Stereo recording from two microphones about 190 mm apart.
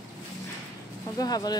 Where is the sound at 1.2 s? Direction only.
20° left (ahead or behind).